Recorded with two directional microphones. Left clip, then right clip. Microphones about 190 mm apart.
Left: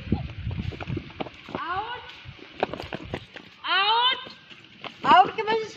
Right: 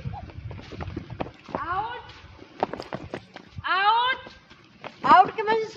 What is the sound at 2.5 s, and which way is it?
Clip-clop, 10° right (ahead or behind).